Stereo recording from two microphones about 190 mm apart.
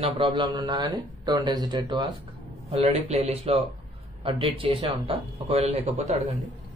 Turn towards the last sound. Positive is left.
turn(degrees=-35)  # may be behind; listen again after turning